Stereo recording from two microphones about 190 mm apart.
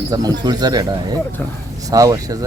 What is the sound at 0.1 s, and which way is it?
Speech, 20° right (ahead or behind).